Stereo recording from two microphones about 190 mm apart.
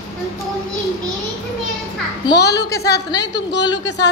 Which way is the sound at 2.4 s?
60° left (ahead or behind).